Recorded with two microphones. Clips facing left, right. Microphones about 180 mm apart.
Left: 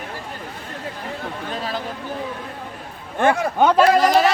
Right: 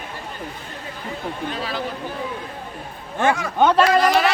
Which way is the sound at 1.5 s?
45° left (ahead or behind).